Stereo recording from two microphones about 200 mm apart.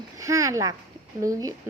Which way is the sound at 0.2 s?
15° right (ahead or behind).